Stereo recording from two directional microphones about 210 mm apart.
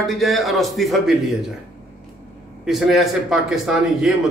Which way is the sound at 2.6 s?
Centre (ahead or behind).